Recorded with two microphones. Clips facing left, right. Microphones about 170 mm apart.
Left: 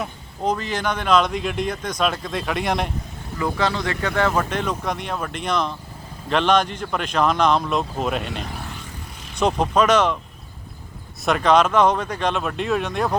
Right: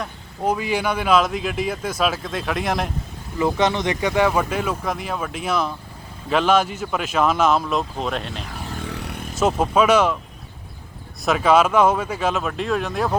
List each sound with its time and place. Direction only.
0.4 s speech: 10° right (ahead or behind)
3.3 s speech: 20° right (ahead or behind); by 8.4 s centre (ahead or behind)
8.7 s a sound: 70° right (ahead or behind)
9.3 s speech: 5° right (ahead or behind)
11.3 s speech: 5° right (ahead or behind)